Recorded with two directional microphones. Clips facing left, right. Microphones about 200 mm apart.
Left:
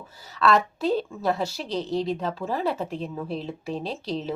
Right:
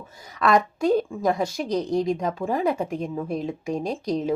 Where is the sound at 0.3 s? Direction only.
15° right (ahead or behind).